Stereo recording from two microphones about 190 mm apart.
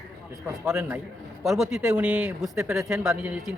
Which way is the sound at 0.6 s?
5° right (ahead or behind).